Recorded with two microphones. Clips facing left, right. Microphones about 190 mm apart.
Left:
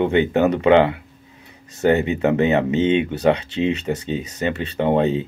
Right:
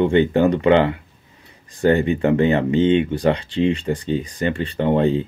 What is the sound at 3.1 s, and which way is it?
Speech, 70° left (ahead or behind).